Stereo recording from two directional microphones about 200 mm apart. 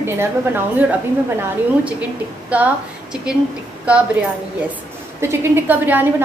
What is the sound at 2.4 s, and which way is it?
Speech, 5° right (ahead or behind).